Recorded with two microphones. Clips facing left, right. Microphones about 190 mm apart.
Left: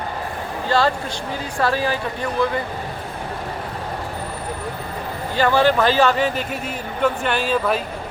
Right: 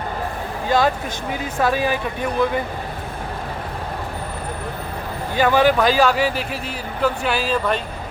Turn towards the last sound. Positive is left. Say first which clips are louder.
# left 1 dB
turn(degrees=5)  # may be behind; listen again after turning